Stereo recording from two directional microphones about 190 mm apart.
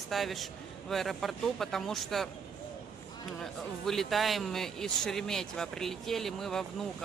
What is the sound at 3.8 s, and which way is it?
Speech, centre (ahead or behind).